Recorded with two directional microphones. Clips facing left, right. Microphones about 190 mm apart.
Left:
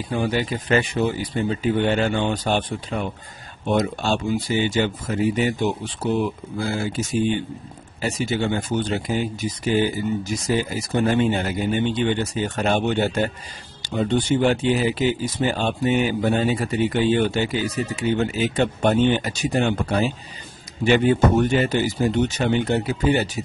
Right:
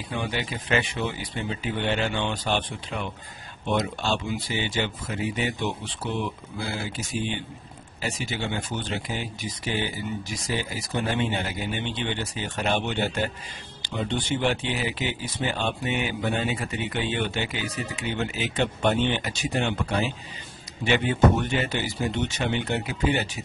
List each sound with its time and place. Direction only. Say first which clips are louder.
0.1 s speech: left 7 dB; 40° left (ahead or behind)